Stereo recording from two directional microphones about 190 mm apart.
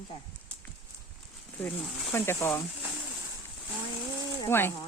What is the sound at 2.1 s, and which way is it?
Speech, 15° left (ahead or behind).